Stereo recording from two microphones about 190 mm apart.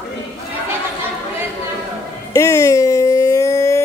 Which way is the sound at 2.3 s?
15° left (ahead or behind).